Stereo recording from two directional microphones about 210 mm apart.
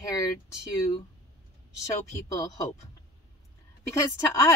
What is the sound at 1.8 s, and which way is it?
Speech, 15° left (ahead or behind).